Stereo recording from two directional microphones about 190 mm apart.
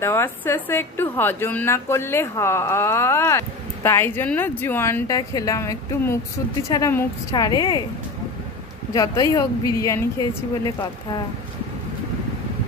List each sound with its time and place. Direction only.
0.0 s a woman's voice: 15° left (ahead or behind)
8.9 s a woman's voice: 20° left (ahead or behind)